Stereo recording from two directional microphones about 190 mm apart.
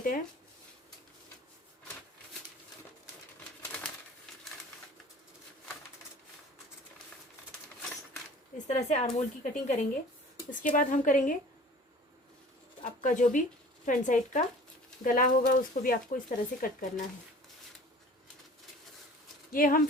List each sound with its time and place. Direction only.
3.6 s bird: 5° left (ahead or behind)
8.6 s speech: 35° left (ahead or behind)
13.0 s speech: 40° left (ahead or behind)
19.5 s speech: 45° left (ahead or behind)